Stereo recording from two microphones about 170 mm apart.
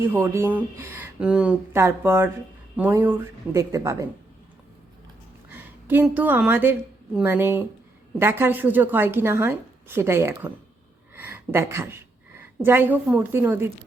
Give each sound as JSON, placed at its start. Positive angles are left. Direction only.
{"t": 0.0, "sound": "a woman's voice", "side_deg": -15}
{"t": 5.5, "sound": "a woman's voice", "side_deg": -10}
{"t": 11.1, "sound": "a sound", "side_deg": -15}
{"t": 12.6, "sound": "a woman's voice", "side_deg": -10}